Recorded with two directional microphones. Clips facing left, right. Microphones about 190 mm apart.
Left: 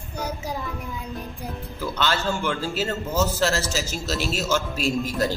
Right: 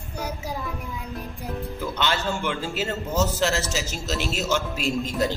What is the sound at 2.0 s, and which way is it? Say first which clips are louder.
A man's voice: left 2 dB; 20° right (ahead or behind).